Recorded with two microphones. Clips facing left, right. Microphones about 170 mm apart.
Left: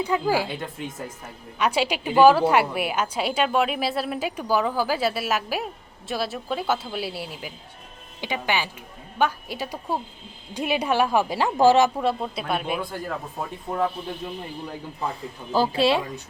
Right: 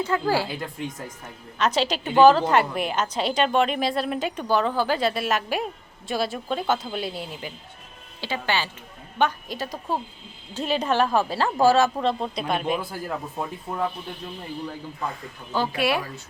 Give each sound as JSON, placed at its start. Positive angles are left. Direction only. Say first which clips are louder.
{"t": 0.0, "sound": "a woman's voice", "louder": "left 1 dB", "side_deg": 15}
{"t": 0.4, "sound": "speech", "louder": "even", "side_deg": 0}
{"t": 1.5, "sound": "a woman's voice", "louder": "even", "side_deg": 10}
{"t": 11.9, "sound": "speech", "louder": "even", "side_deg": 5}
{"t": 15.7, "sound": "speech", "louder": "left 3 dB", "side_deg": 25}